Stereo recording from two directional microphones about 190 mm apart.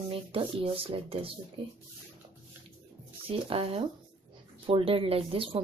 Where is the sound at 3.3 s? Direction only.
30° right (ahead or behind).